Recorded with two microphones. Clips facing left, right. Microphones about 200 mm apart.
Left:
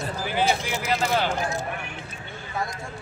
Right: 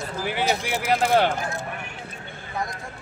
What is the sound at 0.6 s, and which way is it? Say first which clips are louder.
Speech: right 3 dB; 55° right (ahead or behind).